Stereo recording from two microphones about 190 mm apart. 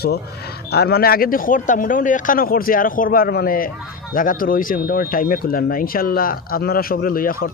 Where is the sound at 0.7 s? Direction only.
55° left (ahead or behind).